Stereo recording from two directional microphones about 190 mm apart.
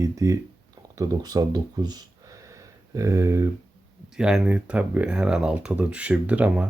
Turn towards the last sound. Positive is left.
turn(degrees=-5)  # may be behind; listen again after turning